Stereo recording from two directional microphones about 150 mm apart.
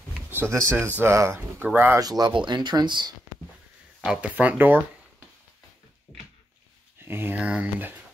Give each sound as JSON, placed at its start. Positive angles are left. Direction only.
{"t": 0.3, "sound": "speech", "side_deg": -15}
{"t": 2.0, "sound": "speech", "side_deg": -30}
{"t": 4.0, "sound": "speech", "side_deg": -5}
{"t": 7.1, "sound": "speech", "side_deg": -15}